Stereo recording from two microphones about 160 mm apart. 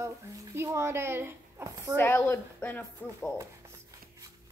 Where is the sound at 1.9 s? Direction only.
10° left (ahead or behind).